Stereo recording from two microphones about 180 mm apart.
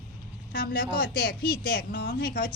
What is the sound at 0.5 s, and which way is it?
A woman's voice, 55° left (ahead or behind).